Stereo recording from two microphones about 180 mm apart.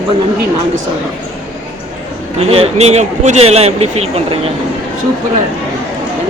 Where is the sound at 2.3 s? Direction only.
35° right (ahead or behind).